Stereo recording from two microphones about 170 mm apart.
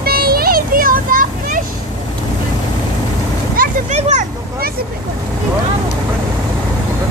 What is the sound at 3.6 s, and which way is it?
Speech, 45° right (ahead or behind).